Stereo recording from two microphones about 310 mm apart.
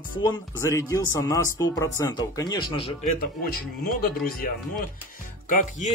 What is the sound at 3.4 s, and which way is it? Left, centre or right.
Speech, left.